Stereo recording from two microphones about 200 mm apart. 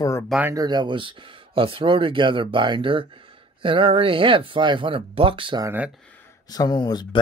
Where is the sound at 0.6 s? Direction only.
20° right (ahead or behind).